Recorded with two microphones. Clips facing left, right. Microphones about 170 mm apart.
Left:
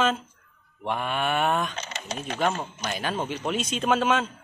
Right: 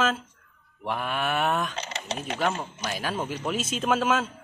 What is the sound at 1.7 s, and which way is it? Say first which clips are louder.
Speech: right 1 dB; 30° right (ahead or behind).